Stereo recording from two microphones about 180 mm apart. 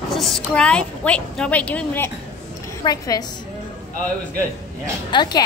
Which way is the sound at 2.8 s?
20° left (ahead or behind).